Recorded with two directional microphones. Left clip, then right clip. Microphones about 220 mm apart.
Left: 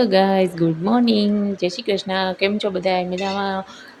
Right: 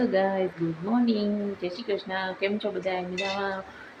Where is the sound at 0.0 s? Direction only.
45° left (ahead or behind).